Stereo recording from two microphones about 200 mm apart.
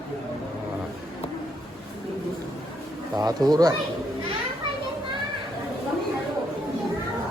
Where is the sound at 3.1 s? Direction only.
20° right (ahead or behind).